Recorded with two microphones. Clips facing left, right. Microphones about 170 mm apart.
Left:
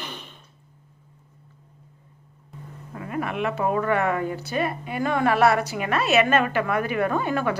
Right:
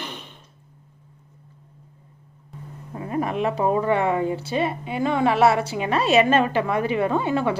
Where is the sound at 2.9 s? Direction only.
30° right (ahead or behind).